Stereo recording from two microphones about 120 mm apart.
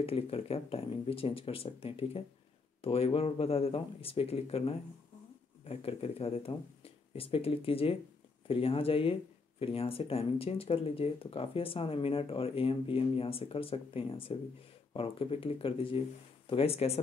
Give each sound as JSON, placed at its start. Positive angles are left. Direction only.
{"t": 0.0, "sound": "speech", "side_deg": 55}